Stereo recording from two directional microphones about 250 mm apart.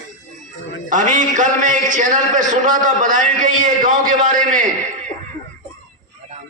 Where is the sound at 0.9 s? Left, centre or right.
Right.